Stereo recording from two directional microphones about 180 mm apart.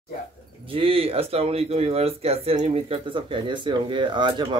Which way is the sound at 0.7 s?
30° right (ahead or behind).